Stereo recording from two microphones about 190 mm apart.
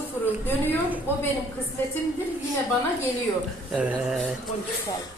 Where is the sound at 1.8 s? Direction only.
10° left (ahead or behind).